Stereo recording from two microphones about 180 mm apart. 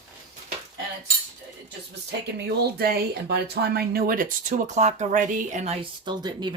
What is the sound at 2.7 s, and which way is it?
Speech, 60° right (ahead or behind).